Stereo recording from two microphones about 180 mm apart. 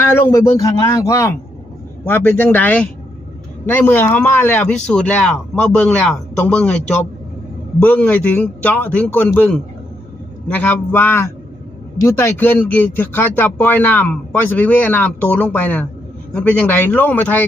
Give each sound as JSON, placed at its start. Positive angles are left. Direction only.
{"t": 0.1, "sound": "speech", "side_deg": 15}